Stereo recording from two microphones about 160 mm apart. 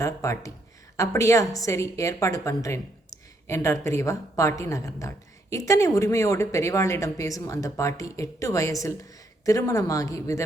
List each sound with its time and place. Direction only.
0.0 s a woman's voice: 20° left (ahead or behind)